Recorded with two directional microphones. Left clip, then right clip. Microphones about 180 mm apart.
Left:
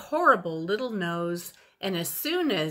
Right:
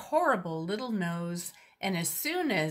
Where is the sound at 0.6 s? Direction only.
30° left (ahead or behind).